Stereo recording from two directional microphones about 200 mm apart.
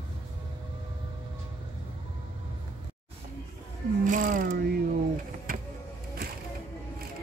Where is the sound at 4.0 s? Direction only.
40° right (ahead or behind).